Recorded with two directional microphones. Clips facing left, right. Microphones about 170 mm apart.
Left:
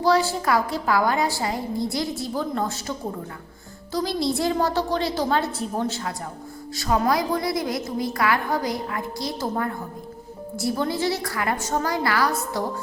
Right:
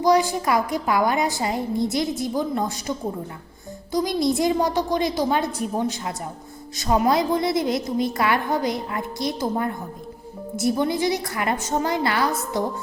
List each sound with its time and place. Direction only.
0.0 s a woman's voice: 15° right (ahead or behind)
3.9 s a woman's voice: 20° right (ahead or behind)